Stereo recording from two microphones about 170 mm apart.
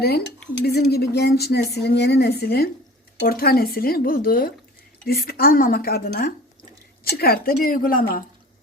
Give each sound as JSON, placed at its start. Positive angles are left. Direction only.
{"t": 0.6, "sound": "a woman's voice", "side_deg": 70}